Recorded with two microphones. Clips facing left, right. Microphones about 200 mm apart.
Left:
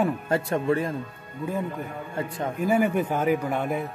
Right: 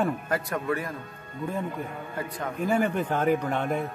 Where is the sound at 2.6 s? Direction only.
5° left (ahead or behind).